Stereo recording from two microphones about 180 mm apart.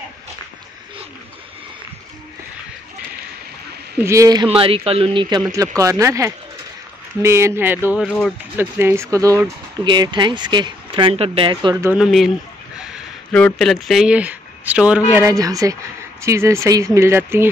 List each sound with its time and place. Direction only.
4.0 s speech: 15° right (ahead or behind)
4.5 s speech: 30° right (ahead or behind); by 8.0 s 10° right (ahead or behind)
8.0 s speech: centre (ahead or behind)
8.5 s speech: 15° right (ahead or behind); by 11.7 s 30° right (ahead or behind)
11.7 s speech: 15° right (ahead or behind)
12.0 s speech: centre (ahead or behind)
12.7 s a sound: 5° right (ahead or behind)
13.4 s speech: 5° left (ahead or behind)
15.1 s speech: 20° right (ahead or behind)